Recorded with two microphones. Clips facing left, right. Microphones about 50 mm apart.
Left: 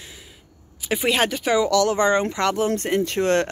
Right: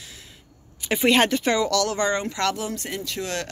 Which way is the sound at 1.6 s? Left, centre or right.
Left.